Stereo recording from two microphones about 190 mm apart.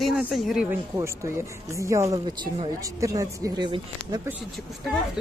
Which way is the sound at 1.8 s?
15° right (ahead or behind).